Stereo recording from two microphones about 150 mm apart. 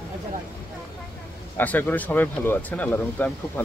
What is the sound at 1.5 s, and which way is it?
Speech, 10° left (ahead or behind).